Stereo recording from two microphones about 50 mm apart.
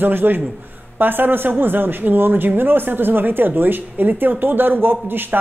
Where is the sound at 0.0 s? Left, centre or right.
Right.